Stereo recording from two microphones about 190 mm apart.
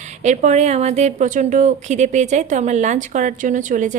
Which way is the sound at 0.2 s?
40° right (ahead or behind).